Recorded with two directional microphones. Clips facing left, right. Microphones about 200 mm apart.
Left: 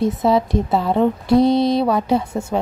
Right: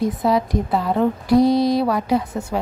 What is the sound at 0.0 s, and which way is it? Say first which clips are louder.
Speech: left 2 dB; 25° left (ahead or behind).